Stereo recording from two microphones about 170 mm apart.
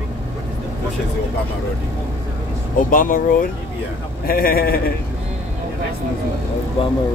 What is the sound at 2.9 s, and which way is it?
A man's voice, 55° left (ahead or behind).